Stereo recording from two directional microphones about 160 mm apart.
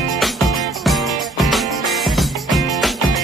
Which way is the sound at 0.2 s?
Centre (ahead or behind).